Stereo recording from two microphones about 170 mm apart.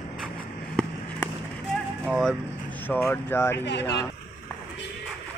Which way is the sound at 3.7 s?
90° left.